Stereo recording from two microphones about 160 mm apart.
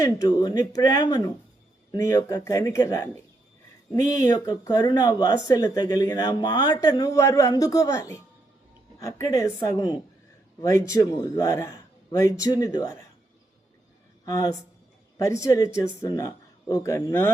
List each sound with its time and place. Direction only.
0.0 s speech: 20° left (ahead or behind)
4.3 s speech: 25° left (ahead or behind)
14.3 s speech: 20° left (ahead or behind)